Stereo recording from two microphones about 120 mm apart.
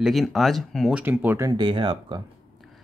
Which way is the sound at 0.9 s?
15° right (ahead or behind).